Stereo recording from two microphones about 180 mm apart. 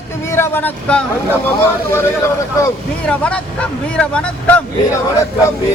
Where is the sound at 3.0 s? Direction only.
5° left (ahead or behind).